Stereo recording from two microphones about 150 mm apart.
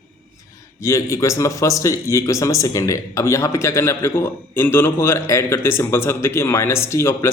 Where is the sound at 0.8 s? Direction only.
20° left (ahead or behind).